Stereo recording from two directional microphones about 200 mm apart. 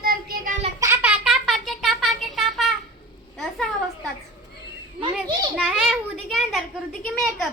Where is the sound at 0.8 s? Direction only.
10° right (ahead or behind).